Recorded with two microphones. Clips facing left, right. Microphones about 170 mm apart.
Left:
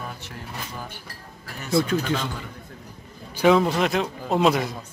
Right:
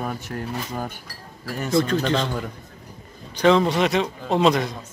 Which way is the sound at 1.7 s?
5° left (ahead or behind).